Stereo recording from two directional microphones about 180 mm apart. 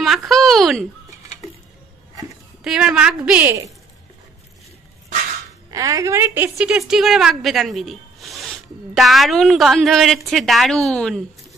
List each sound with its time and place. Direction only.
0.0 s a sound: centre (ahead or behind)
2.6 s speech: 5° right (ahead or behind)
5.7 s a woman's voice: 20° right (ahead or behind)
6.6 s speech: 5° right (ahead or behind)